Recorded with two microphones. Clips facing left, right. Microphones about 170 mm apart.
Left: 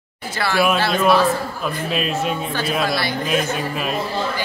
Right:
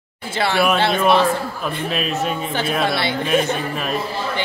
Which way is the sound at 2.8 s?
25° right (ahead or behind).